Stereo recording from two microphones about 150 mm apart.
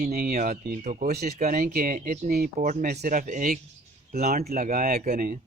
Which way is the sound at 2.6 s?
60° right (ahead or behind).